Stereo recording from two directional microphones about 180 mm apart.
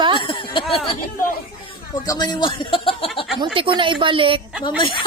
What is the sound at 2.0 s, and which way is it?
Speech, 20° left (ahead or behind).